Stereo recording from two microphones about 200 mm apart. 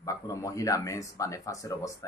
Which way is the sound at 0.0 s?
15° left (ahead or behind).